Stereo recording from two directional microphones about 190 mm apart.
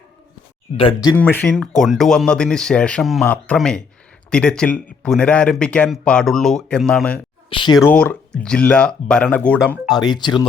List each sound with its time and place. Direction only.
0.8 s speech: 30° left (ahead or behind)
1.1 s speech: 10° left (ahead or behind)
7.5 s speech: 25° left (ahead or behind)
7.9 s speech: 10° left (ahead or behind)
9.9 s speech: 20° left (ahead or behind)